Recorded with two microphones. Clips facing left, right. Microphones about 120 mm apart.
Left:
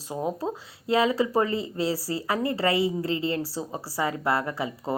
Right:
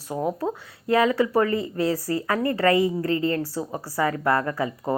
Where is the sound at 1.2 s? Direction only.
30° left (ahead or behind).